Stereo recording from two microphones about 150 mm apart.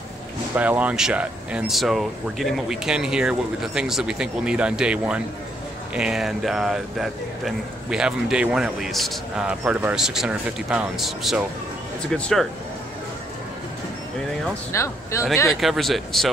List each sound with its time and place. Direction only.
0.6 s speech: 10° right (ahead or behind)
14.7 s speech: 20° left (ahead or behind)
15.6 s speech: centre (ahead or behind)